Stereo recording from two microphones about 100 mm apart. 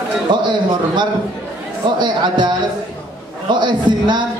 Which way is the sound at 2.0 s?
50° right (ahead or behind).